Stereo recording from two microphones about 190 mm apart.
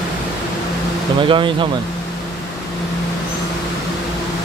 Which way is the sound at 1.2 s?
25° right (ahead or behind).